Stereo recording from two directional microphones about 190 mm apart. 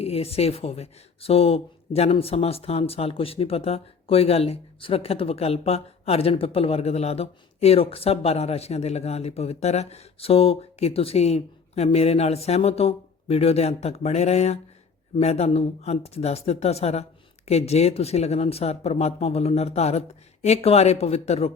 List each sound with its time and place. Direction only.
0.0 s speech: 30° left (ahead or behind)